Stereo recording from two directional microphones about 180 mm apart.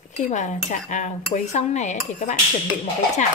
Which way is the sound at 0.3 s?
40° left (ahead or behind).